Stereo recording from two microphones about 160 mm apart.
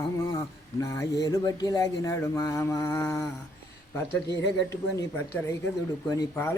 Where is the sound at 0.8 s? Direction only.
20° left (ahead or behind).